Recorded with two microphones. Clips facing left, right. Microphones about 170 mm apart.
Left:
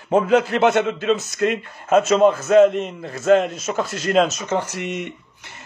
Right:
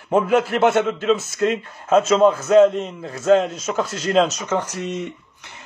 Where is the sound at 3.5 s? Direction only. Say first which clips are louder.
Right 1 dB; 10° left (ahead or behind).